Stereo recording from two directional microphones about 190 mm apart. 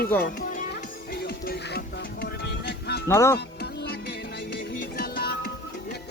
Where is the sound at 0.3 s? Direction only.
40° left (ahead or behind); by 3.1 s 60° left (ahead or behind).